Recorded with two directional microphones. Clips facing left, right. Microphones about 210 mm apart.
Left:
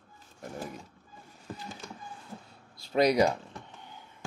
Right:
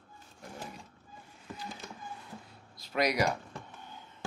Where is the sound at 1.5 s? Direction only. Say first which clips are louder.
Left 3 dB; 35° left (ahead or behind).